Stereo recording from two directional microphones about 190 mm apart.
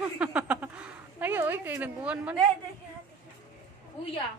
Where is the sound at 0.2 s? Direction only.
5° right (ahead or behind).